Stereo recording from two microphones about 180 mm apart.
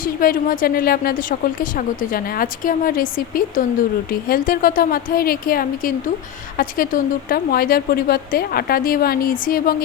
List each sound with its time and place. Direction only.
0.0 s a woman's voice: 55° left (ahead or behind)